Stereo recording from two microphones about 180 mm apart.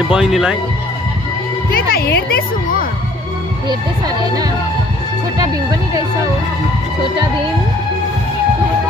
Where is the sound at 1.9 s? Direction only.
60° left (ahead or behind).